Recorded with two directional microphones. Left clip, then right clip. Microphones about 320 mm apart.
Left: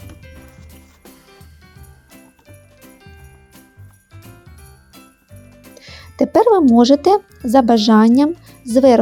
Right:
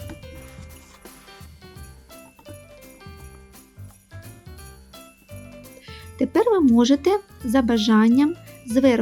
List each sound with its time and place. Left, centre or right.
5.8 s speech: centre